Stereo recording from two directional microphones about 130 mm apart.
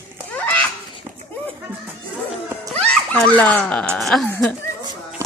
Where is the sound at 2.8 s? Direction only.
5° left (ahead or behind).